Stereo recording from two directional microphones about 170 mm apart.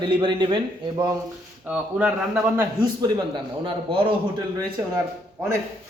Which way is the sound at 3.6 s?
30° right (ahead or behind).